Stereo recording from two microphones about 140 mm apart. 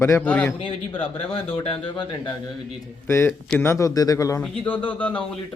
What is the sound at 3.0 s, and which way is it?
A man's voice, 15° left (ahead or behind).